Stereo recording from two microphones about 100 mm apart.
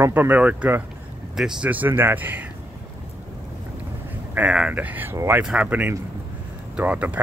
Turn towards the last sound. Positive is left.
turn(degrees=-15)  # may be behind; listen again after turning